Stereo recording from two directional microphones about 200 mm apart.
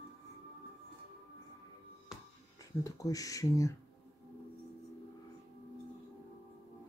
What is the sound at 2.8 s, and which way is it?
Speech, 15° left (ahead or behind).